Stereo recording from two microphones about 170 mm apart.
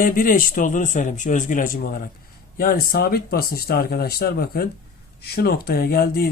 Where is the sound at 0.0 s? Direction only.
55° left (ahead or behind).